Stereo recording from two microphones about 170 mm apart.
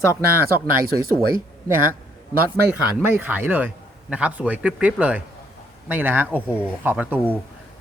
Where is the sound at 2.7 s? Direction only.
10° right (ahead or behind).